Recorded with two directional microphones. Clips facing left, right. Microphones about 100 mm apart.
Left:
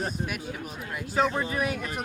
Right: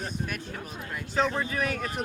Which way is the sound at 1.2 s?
10° left (ahead or behind).